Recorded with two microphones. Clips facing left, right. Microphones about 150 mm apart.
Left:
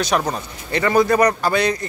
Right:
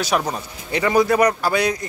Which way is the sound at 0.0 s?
5° right (ahead or behind).